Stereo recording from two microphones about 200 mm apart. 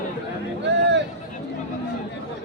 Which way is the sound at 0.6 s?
60° right (ahead or behind).